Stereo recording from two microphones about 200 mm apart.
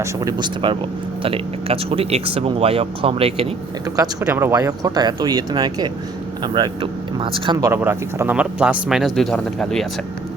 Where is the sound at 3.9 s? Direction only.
15° right (ahead or behind).